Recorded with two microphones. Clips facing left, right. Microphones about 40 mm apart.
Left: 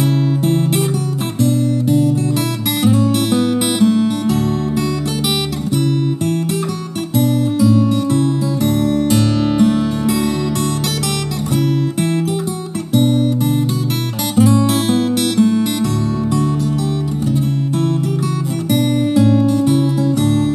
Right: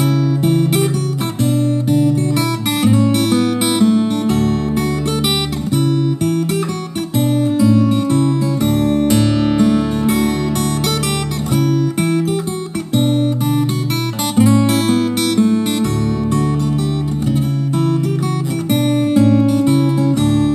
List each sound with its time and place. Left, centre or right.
0.0 s music: right
3.3 s music: right
7.2 s music: right
12.9 s guitar: right
14.3 s music: right
18.7 s music: right